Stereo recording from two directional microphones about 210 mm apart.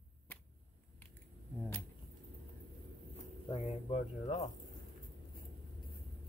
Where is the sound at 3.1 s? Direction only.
30° left (ahead or behind).